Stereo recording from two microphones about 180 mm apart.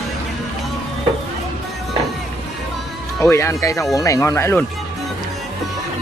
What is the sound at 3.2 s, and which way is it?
Speech, 15° left (ahead or behind).